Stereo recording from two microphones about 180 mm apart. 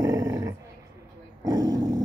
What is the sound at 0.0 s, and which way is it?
Dog, 20° right (ahead or behind).